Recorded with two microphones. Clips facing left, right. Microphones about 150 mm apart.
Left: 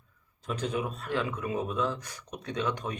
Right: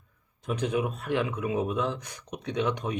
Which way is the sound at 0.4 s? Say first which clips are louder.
Right 4 dB; 15° right (ahead or behind).